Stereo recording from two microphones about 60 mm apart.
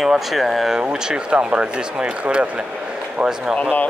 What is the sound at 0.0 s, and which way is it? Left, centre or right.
Speech, centre.